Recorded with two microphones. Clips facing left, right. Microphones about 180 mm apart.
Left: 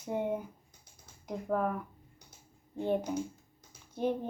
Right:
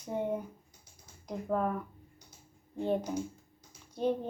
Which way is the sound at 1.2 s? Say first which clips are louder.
Even; 5° left (ahead or behind).